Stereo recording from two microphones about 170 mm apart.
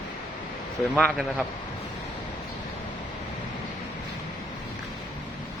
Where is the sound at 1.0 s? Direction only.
Centre (ahead or behind).